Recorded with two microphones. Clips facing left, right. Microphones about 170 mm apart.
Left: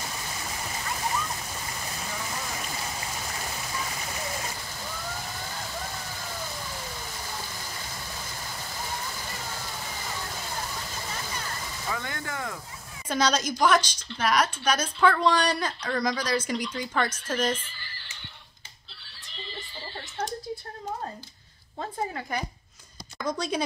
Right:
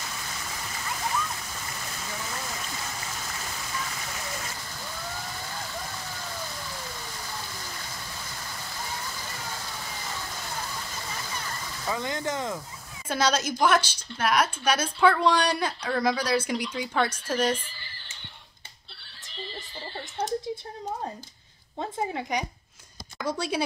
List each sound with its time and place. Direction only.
11.9 s speech: 20° right (ahead or behind)
13.1 s a woman's voice: 10° right (ahead or behind)
21.7 s a woman's voice: 15° right (ahead or behind)